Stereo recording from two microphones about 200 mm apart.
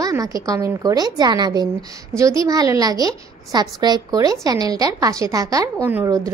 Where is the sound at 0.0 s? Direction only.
15° right (ahead or behind).